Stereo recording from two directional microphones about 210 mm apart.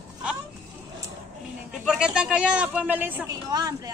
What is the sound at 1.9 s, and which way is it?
Speech, 5° right (ahead or behind).